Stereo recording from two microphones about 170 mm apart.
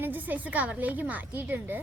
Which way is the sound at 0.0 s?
10° right (ahead or behind).